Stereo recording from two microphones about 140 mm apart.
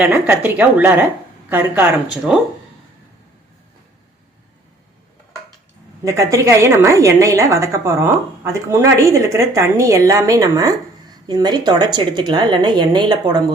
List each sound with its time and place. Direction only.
0.0 s speech: 15° right (ahead or behind)
6.1 s a woman's voice: 20° right (ahead or behind)